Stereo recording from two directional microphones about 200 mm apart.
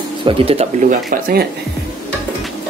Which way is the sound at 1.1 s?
50° right (ahead or behind).